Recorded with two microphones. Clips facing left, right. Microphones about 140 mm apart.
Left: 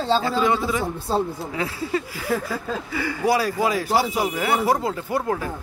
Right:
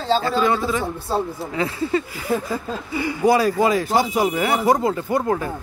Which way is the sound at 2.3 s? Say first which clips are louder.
Right 2 dB; 20° right (ahead or behind).